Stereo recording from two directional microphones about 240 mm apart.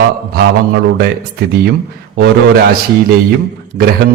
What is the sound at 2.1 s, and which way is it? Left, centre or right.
Speech, right.